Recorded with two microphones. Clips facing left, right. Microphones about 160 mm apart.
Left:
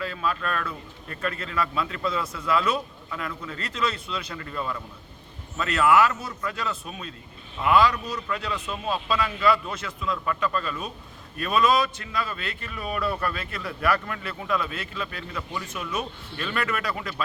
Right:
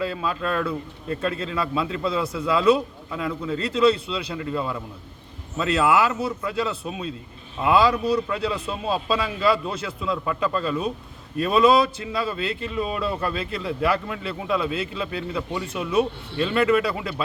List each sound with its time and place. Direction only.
0.0 s a man's voice: 25° right (ahead or behind)